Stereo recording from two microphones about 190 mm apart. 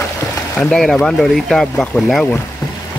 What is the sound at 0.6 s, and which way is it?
Speech, 5° left (ahead or behind).